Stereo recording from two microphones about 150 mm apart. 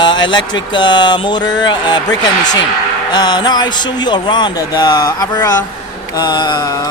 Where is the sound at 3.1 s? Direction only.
30° left (ahead or behind).